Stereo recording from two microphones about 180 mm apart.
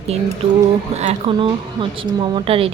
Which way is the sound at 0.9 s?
35° right (ahead or behind).